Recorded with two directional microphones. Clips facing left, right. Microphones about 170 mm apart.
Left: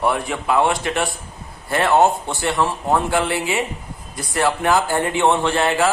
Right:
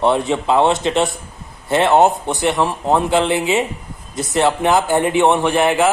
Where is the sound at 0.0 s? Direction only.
25° right (ahead or behind).